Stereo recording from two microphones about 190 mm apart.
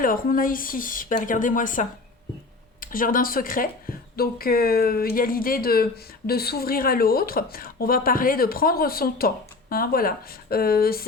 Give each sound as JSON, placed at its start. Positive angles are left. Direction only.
{"t": 0.0, "sound": "a woman's voice", "side_deg": 45}